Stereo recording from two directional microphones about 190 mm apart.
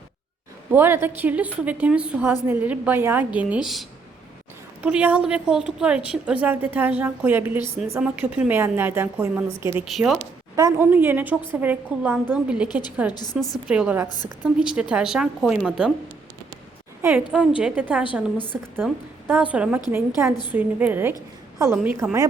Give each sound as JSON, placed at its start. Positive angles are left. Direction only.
{"t": 0.7, "sound": "a woman's voice", "side_deg": -10}
{"t": 9.8, "sound": "a woman's voice", "side_deg": 0}
{"t": 10.5, "sound": "a woman's voice", "side_deg": -15}
{"t": 12.6, "sound": "a woman's voice", "side_deg": 20}
{"t": 13.3, "sound": "a woman's voice", "side_deg": 0}
{"t": 17.0, "sound": "a woman's voice", "side_deg": -10}